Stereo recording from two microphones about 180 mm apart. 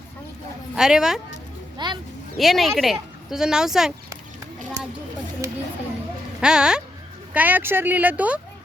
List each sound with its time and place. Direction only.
0.8 s speech: 5° right (ahead or behind)
1.8 s speech: 25° right (ahead or behind)
2.4 s speech: centre (ahead or behind)
5.4 s speech: 15° right (ahead or behind)
6.4 s speech: 5° right (ahead or behind)